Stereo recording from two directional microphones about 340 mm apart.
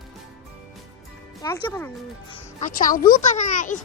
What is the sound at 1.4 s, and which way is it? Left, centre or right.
Speech, centre.